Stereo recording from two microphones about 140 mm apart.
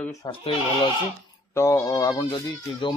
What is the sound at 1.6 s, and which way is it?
Speech, 20° left (ahead or behind).